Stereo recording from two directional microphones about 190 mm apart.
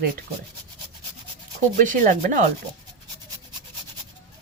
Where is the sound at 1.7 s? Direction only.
45° right (ahead or behind).